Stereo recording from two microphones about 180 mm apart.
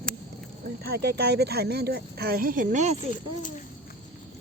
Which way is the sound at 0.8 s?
60° right (ahead or behind).